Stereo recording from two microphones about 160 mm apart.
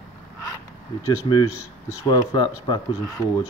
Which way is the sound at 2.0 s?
30° left (ahead or behind).